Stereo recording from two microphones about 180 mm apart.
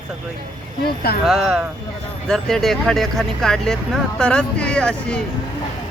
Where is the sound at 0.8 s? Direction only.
60° left (ahead or behind).